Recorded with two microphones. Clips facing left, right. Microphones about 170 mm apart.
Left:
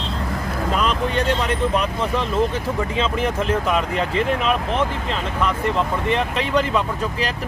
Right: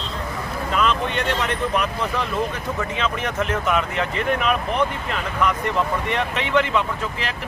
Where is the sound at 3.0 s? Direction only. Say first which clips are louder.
Left 3 dB; 30° left (ahead or behind).